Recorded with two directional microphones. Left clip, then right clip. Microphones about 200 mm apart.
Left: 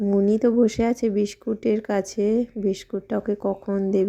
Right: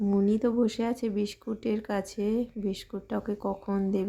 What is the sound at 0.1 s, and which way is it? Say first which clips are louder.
Speech: left 8 dB; 15° left (ahead or behind).